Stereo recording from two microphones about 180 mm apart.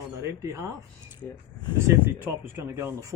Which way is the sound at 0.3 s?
15° right (ahead or behind).